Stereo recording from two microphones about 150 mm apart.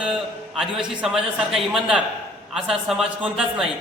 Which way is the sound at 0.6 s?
Centre (ahead or behind).